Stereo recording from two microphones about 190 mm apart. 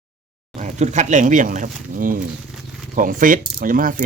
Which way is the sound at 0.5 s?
40° right (ahead or behind).